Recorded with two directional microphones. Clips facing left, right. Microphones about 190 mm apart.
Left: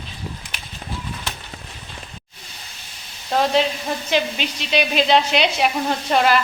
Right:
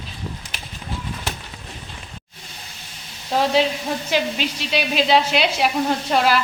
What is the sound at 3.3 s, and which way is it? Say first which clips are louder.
Frying: left 1 dB; 5° right (ahead or behind).